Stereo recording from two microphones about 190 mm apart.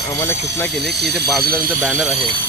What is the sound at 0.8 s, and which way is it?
Speech, 60° right (ahead or behind).